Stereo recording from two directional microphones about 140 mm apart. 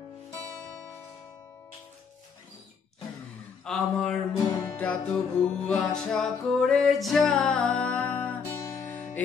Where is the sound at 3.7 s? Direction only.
5° left (ahead or behind).